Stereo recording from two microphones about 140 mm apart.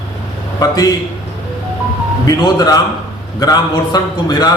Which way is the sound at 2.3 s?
25° left (ahead or behind).